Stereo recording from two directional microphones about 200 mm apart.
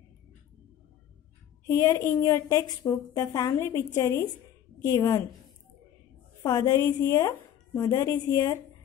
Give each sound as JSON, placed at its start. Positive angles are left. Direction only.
{"t": 1.7, "sound": "speech", "side_deg": 15}
{"t": 6.4, "sound": "speech", "side_deg": 20}